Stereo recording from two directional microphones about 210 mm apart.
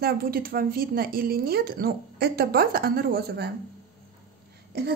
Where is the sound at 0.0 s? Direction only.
45° right (ahead or behind).